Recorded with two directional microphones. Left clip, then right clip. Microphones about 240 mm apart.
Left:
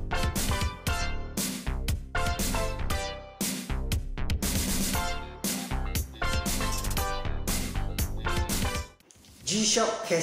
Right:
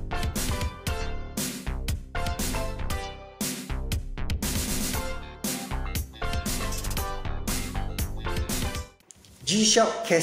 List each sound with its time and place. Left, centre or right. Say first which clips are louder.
0.2 s music: left 1 dB; centre
9.6 s speech: right 4 dB; right